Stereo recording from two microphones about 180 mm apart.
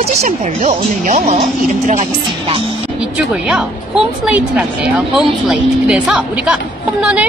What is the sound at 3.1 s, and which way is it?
A child's voice, 5° right (ahead or behind).